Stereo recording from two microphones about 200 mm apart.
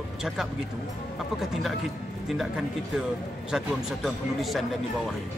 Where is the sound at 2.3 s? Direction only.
Centre (ahead or behind).